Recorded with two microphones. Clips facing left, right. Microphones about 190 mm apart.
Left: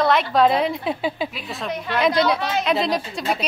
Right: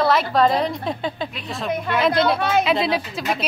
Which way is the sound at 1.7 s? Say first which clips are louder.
Right 4 dB; 55° right (ahead or behind).